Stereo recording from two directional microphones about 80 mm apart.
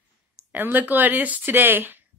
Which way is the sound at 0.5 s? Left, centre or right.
Right.